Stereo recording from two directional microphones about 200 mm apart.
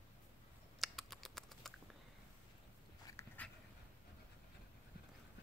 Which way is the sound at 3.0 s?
15° left (ahead or behind).